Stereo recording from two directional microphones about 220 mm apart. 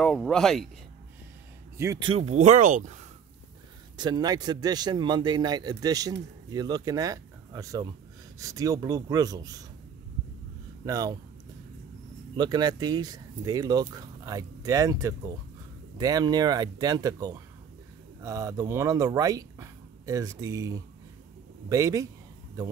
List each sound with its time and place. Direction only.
0.0 s speech: centre (ahead or behind)
1.8 s speech: 15° right (ahead or behind); by 3.0 s 35° right (ahead or behind)
3.9 s speech: 20° right (ahead or behind)
10.9 s speech: 15° right (ahead or behind)
12.4 s speech: 20° right (ahead or behind)